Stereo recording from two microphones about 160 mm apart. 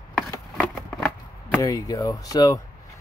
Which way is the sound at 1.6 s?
20° left (ahead or behind).